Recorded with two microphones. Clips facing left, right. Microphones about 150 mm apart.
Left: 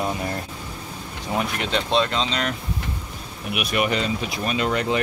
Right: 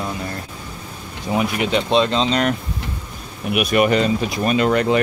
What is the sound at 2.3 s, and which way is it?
Speech, 45° right (ahead or behind).